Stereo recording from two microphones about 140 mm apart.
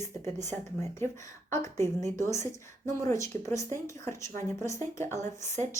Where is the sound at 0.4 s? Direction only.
20° left (ahead or behind).